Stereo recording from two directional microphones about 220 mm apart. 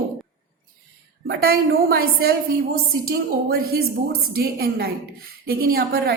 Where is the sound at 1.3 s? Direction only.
45° right (ahead or behind).